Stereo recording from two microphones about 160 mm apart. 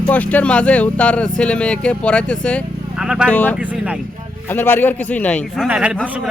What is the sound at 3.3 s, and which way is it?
Speech, 10° left (ahead or behind).